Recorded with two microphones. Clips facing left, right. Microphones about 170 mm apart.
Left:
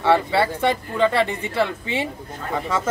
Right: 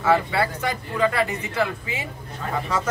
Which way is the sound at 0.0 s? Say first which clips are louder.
Left 2 dB; 30° left (ahead or behind).